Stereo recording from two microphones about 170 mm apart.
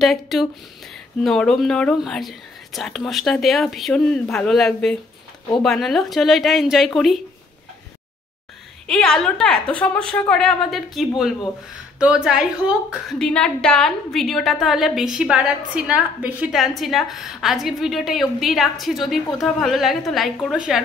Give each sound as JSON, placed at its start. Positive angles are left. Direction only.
{"t": 0.0, "sound": "a woman's voice", "side_deg": 0}
{"t": 8.8, "sound": "a woman's voice", "side_deg": 5}